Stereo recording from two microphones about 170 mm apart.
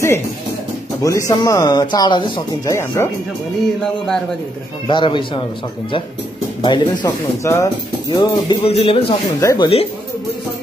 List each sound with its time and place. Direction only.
1.0 s speech: 20° left (ahead or behind)
3.8 s speech: centre (ahead or behind)
4.8 s speech: 30° left (ahead or behind)
6.6 s speech: 25° left (ahead or behind)
8.6 s speech: 35° left (ahead or behind)
9.4 s speech: 20° left (ahead or behind)